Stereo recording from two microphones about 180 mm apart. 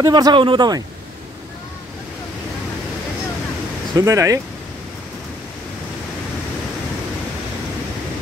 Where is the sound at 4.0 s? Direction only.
15° right (ahead or behind).